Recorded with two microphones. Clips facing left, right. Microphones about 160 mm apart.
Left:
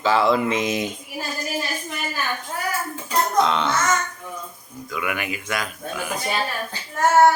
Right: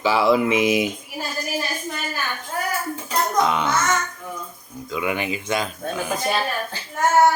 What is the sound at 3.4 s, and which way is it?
Speech, 10° right (ahead or behind).